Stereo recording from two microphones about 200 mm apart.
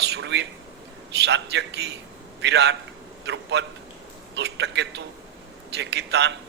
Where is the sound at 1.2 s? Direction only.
60° right (ahead or behind).